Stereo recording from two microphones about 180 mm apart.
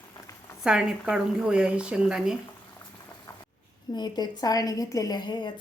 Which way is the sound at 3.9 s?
25° left (ahead or behind).